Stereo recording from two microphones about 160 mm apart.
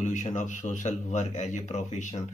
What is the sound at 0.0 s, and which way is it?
Speech, 50° left (ahead or behind).